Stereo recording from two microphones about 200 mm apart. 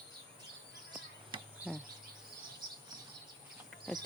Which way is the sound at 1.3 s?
25° right (ahead or behind).